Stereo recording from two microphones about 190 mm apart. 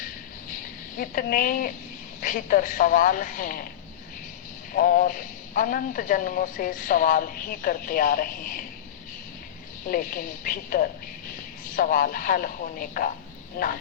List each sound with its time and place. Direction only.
0.9 s a man's voice: 45° left (ahead or behind)
4.7 s a man's voice: 50° left (ahead or behind)
9.8 s a man's voice: 45° left (ahead or behind)